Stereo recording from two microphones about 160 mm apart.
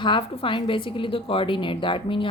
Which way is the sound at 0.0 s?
30° left (ahead or behind).